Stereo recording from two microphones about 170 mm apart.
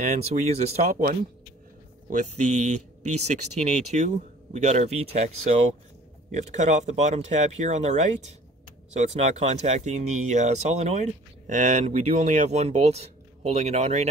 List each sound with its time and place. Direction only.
0.0 s speech: 45° right (ahead or behind)
2.0 s speech: 45° right (ahead or behind)